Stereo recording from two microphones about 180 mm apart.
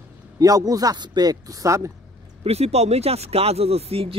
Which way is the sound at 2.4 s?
35° right (ahead or behind).